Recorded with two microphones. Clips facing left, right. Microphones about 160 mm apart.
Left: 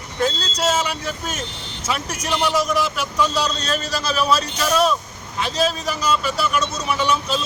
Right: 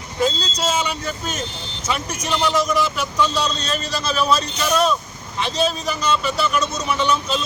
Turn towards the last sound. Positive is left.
turn(degrees=5)  # may be behind; listen again after turning